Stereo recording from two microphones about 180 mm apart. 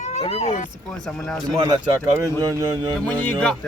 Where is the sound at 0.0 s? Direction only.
40° left (ahead or behind).